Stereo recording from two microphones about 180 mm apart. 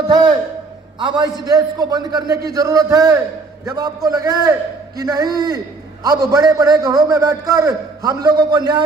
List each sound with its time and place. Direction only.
0.1 s a man's voice: 25° right (ahead or behind)